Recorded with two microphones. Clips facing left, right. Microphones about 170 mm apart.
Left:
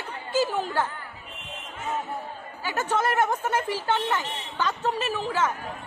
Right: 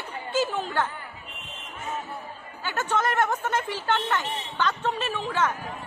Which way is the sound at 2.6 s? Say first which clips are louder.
Left 1 dB; 10° left (ahead or behind).